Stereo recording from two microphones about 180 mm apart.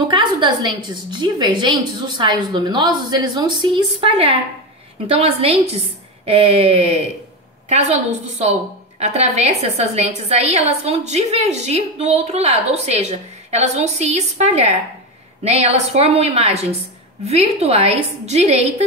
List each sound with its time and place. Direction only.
0.1 s a woman's voice: 25° right (ahead or behind)